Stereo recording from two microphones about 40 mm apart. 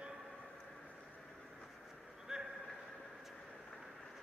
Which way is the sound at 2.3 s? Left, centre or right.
Centre.